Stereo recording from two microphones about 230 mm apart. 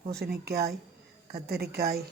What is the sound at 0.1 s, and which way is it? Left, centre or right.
A man's voice, right.